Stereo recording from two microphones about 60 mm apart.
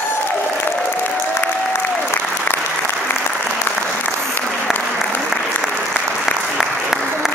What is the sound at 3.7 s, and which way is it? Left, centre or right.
Applause, left.